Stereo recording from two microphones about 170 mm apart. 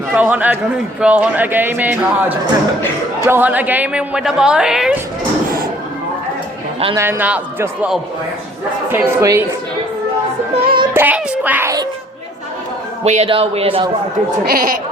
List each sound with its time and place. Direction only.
0.1 s a woman's voice: 10° right (ahead or behind)
3.2 s a woman's voice: 10° right (ahead or behind)
6.9 s a woman's voice: 15° right (ahead or behind)
10.6 s music: 30° right (ahead or behind)
10.9 s music: 10° right (ahead or behind)
13.1 s a man's voice: 35° right (ahead or behind)
14.4 s speech: 60° right (ahead or behind)